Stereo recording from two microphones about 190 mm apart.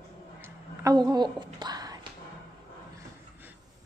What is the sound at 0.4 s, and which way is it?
Whispering, 20° right (ahead or behind).